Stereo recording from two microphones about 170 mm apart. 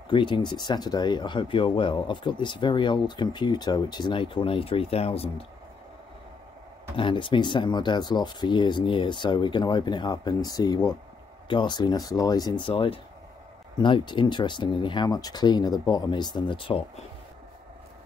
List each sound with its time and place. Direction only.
0.1 s speech: 30° left (ahead or behind)
7.0 s speech: 30° left (ahead or behind)